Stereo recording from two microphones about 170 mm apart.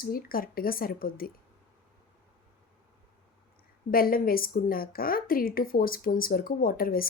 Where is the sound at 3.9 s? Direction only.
60° left (ahead or behind).